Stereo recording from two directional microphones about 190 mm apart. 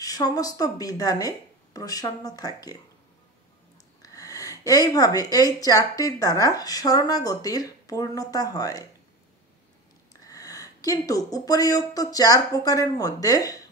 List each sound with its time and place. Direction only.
0.0 s speech: 20° left (ahead or behind)
4.0 s speech: 20° left (ahead or behind)
10.2 s a sound: 20° left (ahead or behind)
11.3 s speech: 20° left (ahead or behind)